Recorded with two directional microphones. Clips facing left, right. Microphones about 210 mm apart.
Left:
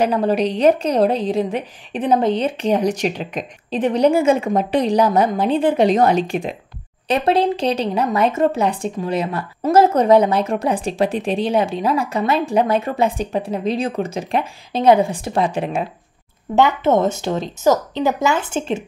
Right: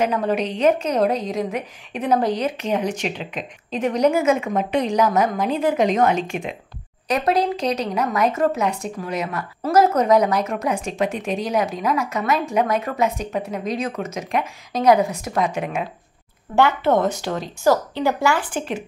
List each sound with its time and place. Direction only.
0.0 s a woman's voice: 35° left (ahead or behind)
16.5 s speech: 20° left (ahead or behind)